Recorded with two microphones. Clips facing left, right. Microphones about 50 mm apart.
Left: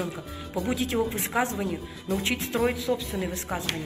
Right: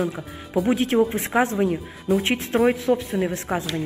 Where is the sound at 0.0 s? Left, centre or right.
Centre.